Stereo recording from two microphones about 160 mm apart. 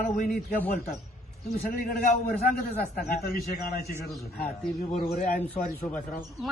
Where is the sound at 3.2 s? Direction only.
70° left (ahead or behind).